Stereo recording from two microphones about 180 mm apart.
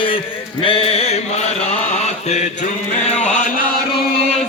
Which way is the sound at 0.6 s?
30° left (ahead or behind).